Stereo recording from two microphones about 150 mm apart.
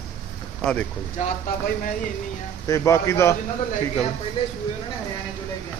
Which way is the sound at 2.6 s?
20° left (ahead or behind).